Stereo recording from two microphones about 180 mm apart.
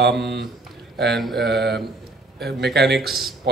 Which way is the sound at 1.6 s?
65° right (ahead or behind).